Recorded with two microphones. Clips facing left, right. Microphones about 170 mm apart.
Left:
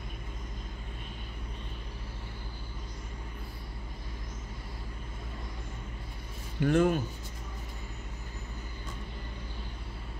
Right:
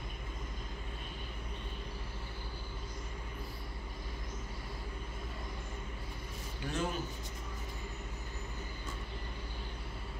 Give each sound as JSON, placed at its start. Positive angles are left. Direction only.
{"t": 6.6, "sound": "speech", "side_deg": 60}